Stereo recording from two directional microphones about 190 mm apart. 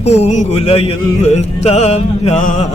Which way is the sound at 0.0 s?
35° left (ahead or behind).